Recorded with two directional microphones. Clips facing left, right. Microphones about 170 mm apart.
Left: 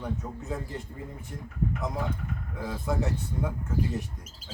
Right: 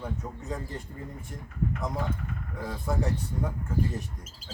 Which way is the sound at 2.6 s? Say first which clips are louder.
Left 1 dB; centre (ahead or behind).